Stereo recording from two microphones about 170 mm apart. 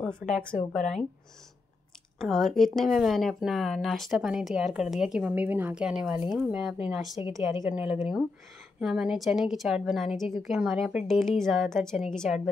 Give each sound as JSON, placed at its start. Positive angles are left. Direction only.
{"t": 0.0, "sound": "speech", "side_deg": 5}
{"t": 2.1, "sound": "speech", "side_deg": 0}
{"t": 7.3, "sound": "a woman's voice", "side_deg": -15}